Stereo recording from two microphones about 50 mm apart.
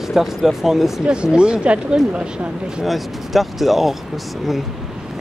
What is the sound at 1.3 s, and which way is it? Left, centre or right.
Speech, centre.